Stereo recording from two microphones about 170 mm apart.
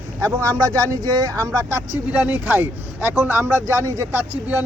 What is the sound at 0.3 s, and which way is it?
Speech, 20° right (ahead or behind).